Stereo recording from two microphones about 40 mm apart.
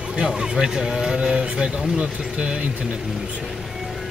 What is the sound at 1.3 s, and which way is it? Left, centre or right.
Speech, right.